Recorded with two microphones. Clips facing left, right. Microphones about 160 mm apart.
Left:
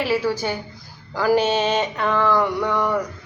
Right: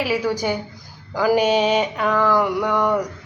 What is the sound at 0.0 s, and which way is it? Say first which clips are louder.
A woman's voice: even; 15° right (ahead or behind).